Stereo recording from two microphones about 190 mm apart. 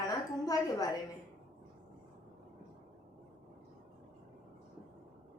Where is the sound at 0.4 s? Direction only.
20° left (ahead or behind).